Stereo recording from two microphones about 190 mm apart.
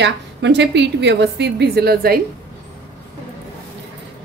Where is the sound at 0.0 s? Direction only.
65° right (ahead or behind).